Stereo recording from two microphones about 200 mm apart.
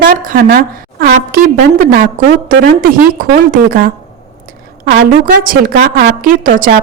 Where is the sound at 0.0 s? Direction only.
45° right (ahead or behind).